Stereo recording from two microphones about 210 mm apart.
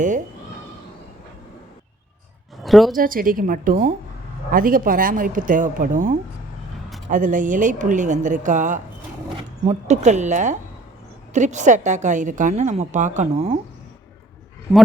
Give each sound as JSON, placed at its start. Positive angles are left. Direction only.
{"t": 2.6, "sound": "speech", "side_deg": 0}
{"t": 2.9, "sound": "a woman's voice", "side_deg": -40}
{"t": 14.7, "sound": "speech", "side_deg": 0}